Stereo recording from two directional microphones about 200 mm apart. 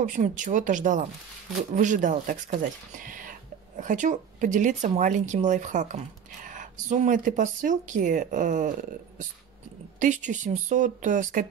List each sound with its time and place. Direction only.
0.0 s speech: 40° right (ahead or behind)